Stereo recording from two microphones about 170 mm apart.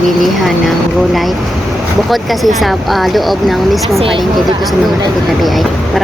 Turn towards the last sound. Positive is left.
turn(degrees=0)  # may be behind; listen again after turning